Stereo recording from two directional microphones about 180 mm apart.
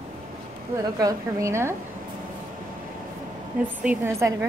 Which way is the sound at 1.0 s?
20° right (ahead or behind).